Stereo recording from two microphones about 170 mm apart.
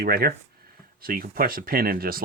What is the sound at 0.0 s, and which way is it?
Speech, 65° right (ahead or behind).